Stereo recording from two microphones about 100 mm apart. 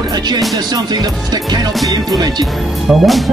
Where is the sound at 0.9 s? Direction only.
45° right (ahead or behind).